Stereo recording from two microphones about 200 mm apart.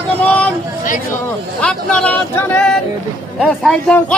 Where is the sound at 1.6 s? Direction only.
5° left (ahead or behind).